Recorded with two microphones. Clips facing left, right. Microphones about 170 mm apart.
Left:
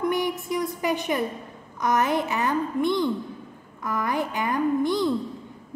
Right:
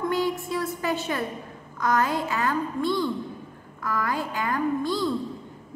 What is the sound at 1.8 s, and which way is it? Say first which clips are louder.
A woman's voice: left 1 dB; 20° left (ahead or behind).